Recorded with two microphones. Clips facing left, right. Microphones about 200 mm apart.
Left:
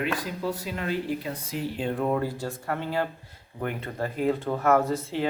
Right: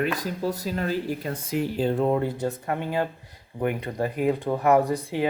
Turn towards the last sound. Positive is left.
turn(degrees=-15)  # may be behind; listen again after turning